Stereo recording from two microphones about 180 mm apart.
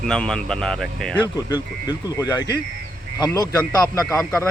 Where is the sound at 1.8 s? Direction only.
20° left (ahead or behind).